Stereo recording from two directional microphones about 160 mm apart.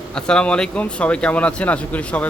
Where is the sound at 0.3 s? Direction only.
5° left (ahead or behind).